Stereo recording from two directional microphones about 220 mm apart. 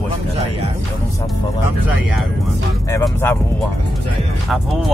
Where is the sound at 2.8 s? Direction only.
15° left (ahead or behind).